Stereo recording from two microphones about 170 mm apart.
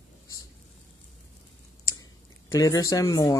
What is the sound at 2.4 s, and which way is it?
Speech, 20° left (ahead or behind).